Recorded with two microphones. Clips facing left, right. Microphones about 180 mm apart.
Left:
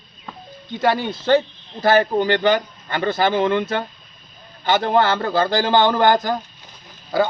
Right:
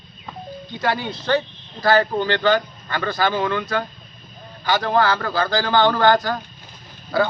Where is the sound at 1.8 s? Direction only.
20° left (ahead or behind).